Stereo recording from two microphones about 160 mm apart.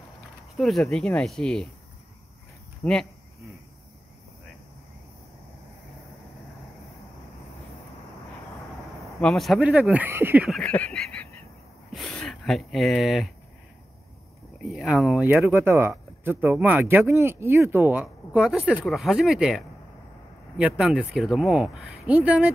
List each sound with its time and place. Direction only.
0.6 s speech: centre (ahead or behind)
2.8 s speech: 5° left (ahead or behind)
9.2 s speech: 5° left (ahead or behind); by 10.4 s 15° right (ahead or behind)
10.4 s speech: centre (ahead or behind)
10.7 s honk: 5° left (ahead or behind)
11.9 s a sound: 5° left (ahead or behind)
14.6 s speech: 5° right (ahead or behind)
15.5 s speech: 15° right (ahead or behind)